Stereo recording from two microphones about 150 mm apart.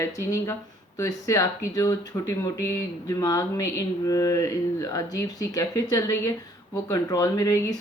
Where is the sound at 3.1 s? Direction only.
25° left (ahead or behind).